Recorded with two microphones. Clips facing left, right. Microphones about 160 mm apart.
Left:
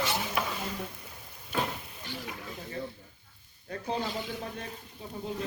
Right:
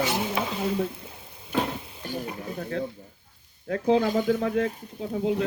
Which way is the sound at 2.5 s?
60° right (ahead or behind).